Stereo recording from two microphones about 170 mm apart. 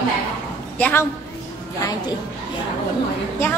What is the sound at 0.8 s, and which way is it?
Speech, 15° left (ahead or behind).